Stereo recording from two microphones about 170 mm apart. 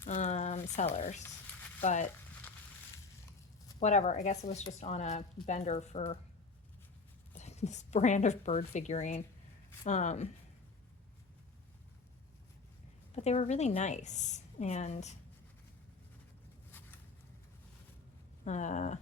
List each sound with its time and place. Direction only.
0.0 s a sound: 45° left (ahead or behind)
0.9 s a woman's voice: 45° left (ahead or behind)
3.8 s speech: 45° left (ahead or behind)
7.3 s a woman's voice: 40° left (ahead or behind)
13.1 s a woman's voice: 40° left (ahead or behind)
16.7 s a sound: 10° left (ahead or behind)
18.4 s a woman's voice: 45° left (ahead or behind)